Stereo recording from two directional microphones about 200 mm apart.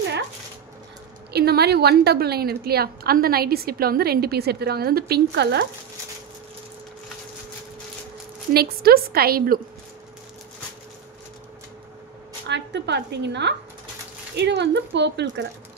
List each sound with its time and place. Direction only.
1.3 s a woman's voice: 55° right (ahead or behind)
8.5 s a woman's voice: 50° right (ahead or behind)
12.4 s a woman's voice: 60° right (ahead or behind)